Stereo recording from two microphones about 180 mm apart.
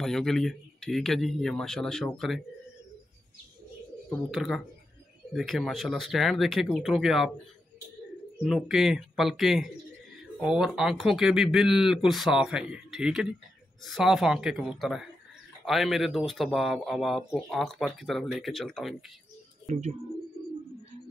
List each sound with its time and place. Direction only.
0.0 s speech: centre (ahead or behind)
4.3 s speech: centre (ahead or behind)
8.4 s speech: centre (ahead or behind)
19.7 s speech: 40° right (ahead or behind)